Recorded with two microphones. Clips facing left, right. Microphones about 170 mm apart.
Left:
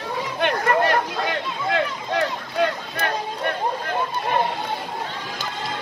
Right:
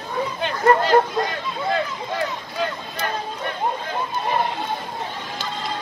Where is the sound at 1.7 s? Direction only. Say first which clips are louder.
Left 5 dB; 70° left (ahead or behind).